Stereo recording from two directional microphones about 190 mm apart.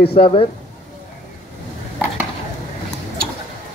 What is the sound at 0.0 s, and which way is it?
Speech, 30° left (ahead or behind).